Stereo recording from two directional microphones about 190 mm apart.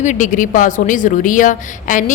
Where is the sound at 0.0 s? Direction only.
40° left (ahead or behind).